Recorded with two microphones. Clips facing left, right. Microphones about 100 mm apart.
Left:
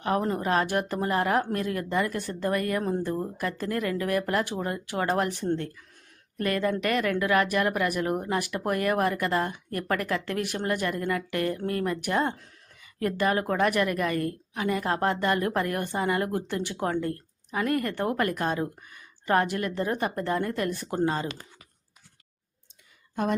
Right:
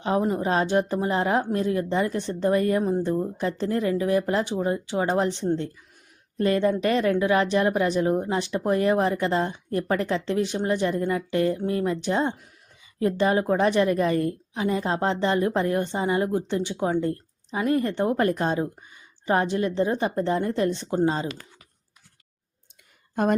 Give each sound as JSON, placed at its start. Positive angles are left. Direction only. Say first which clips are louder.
{"t": 0.0, "sound": "a woman's voice", "louder": "right 3 dB", "side_deg": -20}
{"t": 2.8, "sound": "a woman's voice", "louder": "right 4 dB", "side_deg": -15}